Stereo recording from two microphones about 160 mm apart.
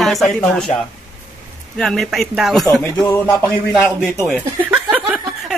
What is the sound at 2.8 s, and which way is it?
Speech, 15° left (ahead or behind).